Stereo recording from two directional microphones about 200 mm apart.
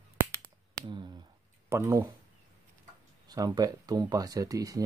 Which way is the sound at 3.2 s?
20° right (ahead or behind).